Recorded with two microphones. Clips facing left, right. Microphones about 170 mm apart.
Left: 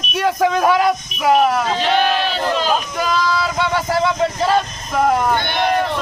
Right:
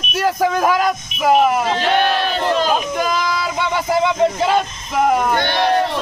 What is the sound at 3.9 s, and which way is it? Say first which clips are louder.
Speech: right 4 dB; 15° right (ahead or behind).